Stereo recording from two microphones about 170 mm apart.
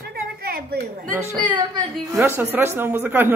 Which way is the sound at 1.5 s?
25° right (ahead or behind).